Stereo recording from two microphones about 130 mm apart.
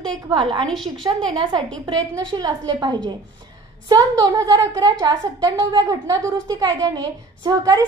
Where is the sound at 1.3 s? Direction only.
30° right (ahead or behind).